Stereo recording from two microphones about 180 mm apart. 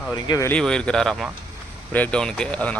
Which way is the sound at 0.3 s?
20° left (ahead or behind).